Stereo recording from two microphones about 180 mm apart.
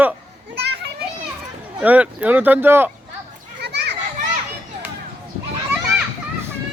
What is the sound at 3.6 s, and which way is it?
Children playing, 70° right (ahead or behind).